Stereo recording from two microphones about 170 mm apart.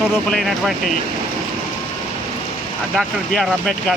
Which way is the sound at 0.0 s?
Centre (ahead or behind).